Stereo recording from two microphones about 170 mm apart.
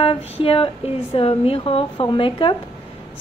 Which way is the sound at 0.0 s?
35° left (ahead or behind).